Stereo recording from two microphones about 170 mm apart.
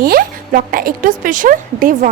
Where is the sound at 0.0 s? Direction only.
60° right (ahead or behind).